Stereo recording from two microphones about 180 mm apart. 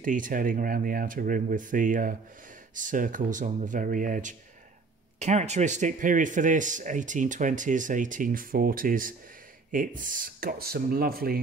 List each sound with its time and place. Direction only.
0.0 s speech: 50° right (ahead or behind)